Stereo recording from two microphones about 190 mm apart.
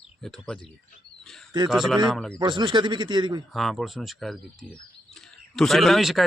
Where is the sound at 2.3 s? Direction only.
25° right (ahead or behind).